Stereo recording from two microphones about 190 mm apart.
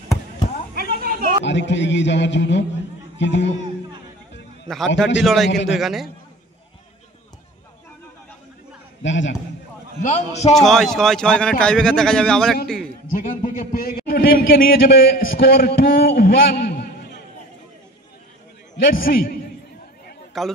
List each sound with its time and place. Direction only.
0.9 s a sound: 50° right (ahead or behind)
1.4 s a man's voice: 70° left (ahead or behind)
4.6 s speech: centre (ahead or behind)
9.0 s a man's voice: 75° left (ahead or behind)
10.0 s a man's voice: 35° left (ahead or behind)
10.5 s speech: centre (ahead or behind)
13.2 s a man's voice: 45° left (ahead or behind)
18.9 s a man's voice: 50° left (ahead or behind)
20.4 s speech: centre (ahead or behind)